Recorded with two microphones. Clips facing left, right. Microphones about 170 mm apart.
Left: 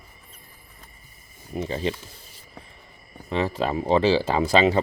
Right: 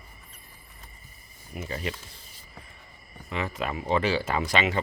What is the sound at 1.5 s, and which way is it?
Speech, 30° left (ahead or behind).